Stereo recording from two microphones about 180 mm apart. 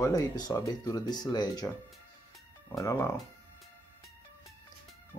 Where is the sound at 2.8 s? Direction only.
15° left (ahead or behind).